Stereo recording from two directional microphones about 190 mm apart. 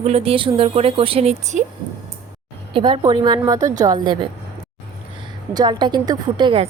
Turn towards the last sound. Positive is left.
turn(degrees=-25)  # may be behind; listen again after turning